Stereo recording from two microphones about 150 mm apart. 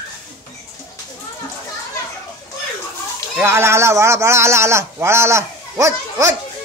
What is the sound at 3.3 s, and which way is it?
Speech, 15° right (ahead or behind).